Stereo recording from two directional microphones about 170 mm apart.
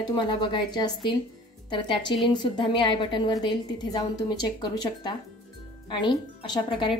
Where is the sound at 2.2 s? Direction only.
30° left (ahead or behind).